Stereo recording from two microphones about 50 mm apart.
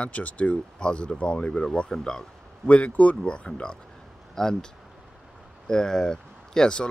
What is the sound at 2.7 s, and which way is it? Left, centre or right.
Speech, left.